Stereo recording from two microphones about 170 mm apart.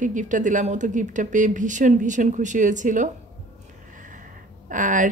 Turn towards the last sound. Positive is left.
turn(degrees=-50)  # may be behind; listen again after turning